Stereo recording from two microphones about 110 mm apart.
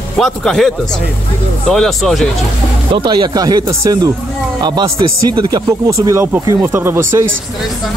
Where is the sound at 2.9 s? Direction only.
45° right (ahead or behind); by 7.0 s 25° right (ahead or behind).